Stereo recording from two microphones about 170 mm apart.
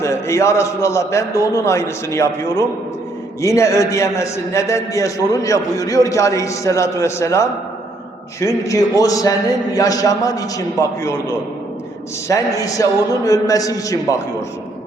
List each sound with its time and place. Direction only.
0.0 s a man's voice: 15° left (ahead or behind)
12.3 s a man's voice: 20° left (ahead or behind)